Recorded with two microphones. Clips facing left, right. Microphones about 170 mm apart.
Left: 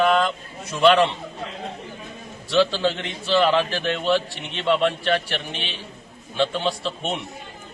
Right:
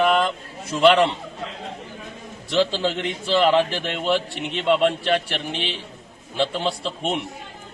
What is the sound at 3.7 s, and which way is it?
A man's voice, 20° right (ahead or behind).